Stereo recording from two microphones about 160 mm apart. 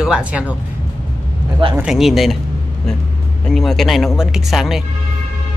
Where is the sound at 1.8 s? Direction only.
5° right (ahead or behind).